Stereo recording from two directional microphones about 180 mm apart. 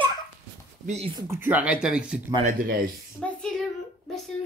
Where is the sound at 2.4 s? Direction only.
50° right (ahead or behind).